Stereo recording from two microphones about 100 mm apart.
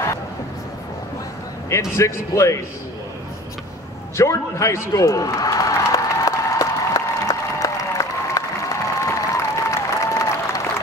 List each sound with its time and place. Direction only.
1.7 s speech: 30° left (ahead or behind)
4.2 s applause: 30° left (ahead or behind)